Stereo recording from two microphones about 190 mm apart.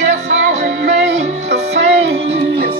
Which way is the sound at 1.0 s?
65° right (ahead or behind).